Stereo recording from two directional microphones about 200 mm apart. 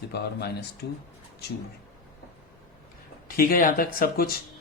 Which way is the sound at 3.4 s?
45° left (ahead or behind).